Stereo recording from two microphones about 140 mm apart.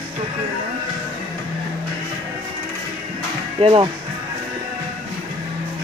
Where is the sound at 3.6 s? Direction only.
40° right (ahead or behind).